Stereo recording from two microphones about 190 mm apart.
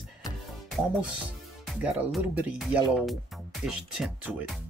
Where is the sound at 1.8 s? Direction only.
5° right (ahead or behind).